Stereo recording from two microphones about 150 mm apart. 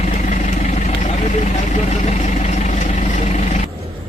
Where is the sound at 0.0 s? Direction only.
50° left (ahead or behind).